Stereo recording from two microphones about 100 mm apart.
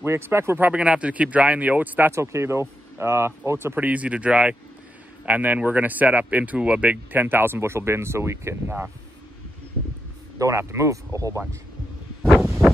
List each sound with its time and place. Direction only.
0.0 s speech: 25° right (ahead or behind)
10.4 s speech: 30° right (ahead or behind)
12.2 s wind: centre (ahead or behind)